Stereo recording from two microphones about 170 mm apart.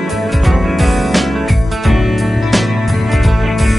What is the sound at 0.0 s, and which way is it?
Music, centre (ahead or behind).